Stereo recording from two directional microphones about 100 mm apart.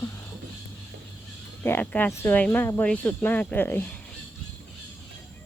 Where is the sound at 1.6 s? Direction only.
20° left (ahead or behind).